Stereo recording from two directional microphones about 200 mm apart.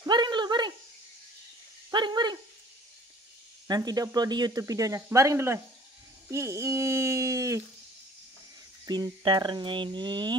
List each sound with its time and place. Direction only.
0.0 s a sound: 20° right (ahead or behind)
1.9 s owl: 20° right (ahead or behind)
3.6 s speech: 20° right (ahead or behind)
8.8 s speech: 20° right (ahead or behind)